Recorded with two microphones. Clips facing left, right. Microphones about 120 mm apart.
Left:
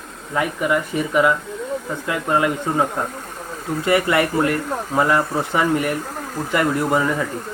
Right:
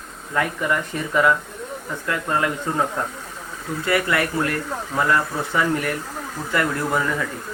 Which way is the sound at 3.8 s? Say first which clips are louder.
Left 4 dB; 25° left (ahead or behind).